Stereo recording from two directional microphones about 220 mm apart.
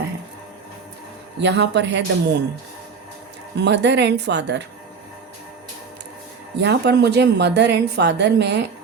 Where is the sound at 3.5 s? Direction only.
50° right (ahead or behind).